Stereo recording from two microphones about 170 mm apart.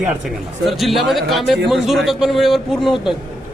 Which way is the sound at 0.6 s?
Centre (ahead or behind).